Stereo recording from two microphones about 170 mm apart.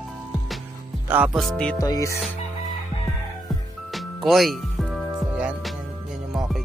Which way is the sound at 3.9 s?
Centre (ahead or behind).